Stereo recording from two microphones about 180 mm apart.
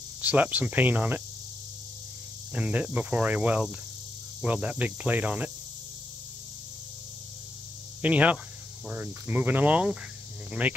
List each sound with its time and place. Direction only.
0.2 s speech: 10° right (ahead or behind)
2.5 s speech: 10° right (ahead or behind)
8.0 s speech: 10° right (ahead or behind)